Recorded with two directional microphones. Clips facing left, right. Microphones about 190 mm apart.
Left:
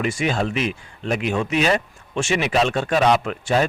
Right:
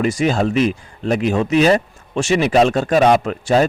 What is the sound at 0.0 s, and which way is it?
Speech, 40° right (ahead or behind).